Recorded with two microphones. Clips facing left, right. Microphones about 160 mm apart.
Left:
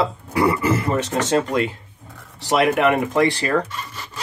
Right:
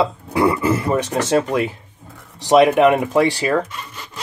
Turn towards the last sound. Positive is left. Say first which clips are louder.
# right 2 dB
turn(degrees=-15)  # may be behind; listen again after turning